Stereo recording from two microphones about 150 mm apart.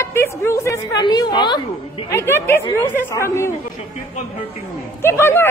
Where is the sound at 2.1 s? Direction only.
15° left (ahead or behind).